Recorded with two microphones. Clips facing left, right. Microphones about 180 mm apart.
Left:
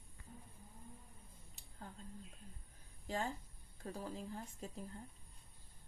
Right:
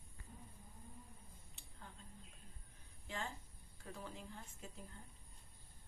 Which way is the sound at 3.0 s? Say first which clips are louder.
Left 6 dB; 35° left (ahead or behind).